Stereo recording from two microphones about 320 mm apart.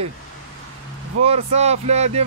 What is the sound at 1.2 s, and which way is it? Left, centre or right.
Speech, centre.